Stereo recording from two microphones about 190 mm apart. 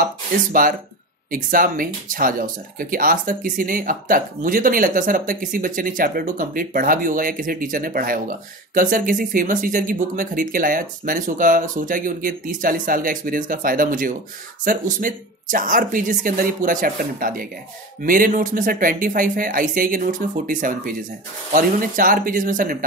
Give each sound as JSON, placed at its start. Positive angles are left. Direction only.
{"t": 0.0, "sound": "speech", "side_deg": -50}